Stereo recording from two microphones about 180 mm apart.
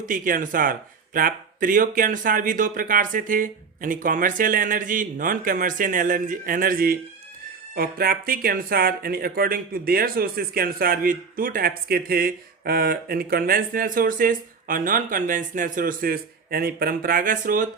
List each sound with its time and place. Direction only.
0.0 s speech: 50° right (ahead or behind)